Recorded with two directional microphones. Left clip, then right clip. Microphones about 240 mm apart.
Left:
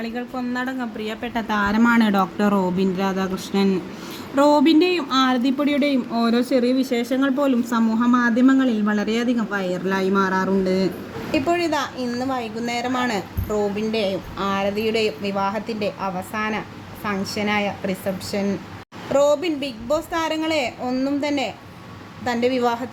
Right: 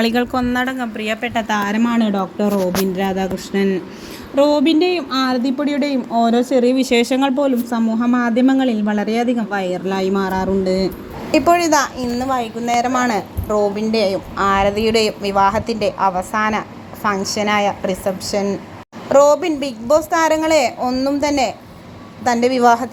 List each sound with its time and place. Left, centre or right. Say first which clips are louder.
0.0 s speech: right 11 dB; right
0.4 s speech: right 7 dB; right
0.7 s speech: right 6 dB; centre
3.0 s a woman's voice: right 4 dB; centre
4.5 s speech: right 1 dB; centre
5.6 s speech: right 1 dB; centre
6.1 s a woman's voice: right 5 dB; centre
6.7 s speech: right 6 dB; right
7.4 s a woman's voice: right 2 dB; centre